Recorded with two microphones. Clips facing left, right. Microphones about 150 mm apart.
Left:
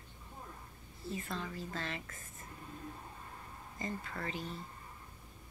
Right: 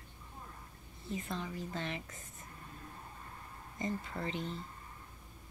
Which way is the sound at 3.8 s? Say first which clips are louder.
Right 3 dB; 25° right (ahead or behind).